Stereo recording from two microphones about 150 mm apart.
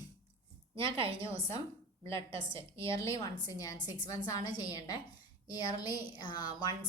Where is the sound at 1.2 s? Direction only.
20° left (ahead or behind).